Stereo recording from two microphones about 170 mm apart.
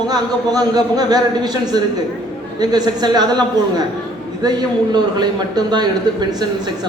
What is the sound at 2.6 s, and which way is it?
Speech, 25° right (ahead or behind).